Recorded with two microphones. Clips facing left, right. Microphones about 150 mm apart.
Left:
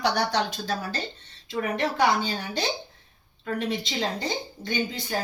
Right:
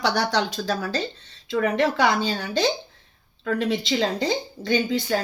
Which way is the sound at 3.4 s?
90° right.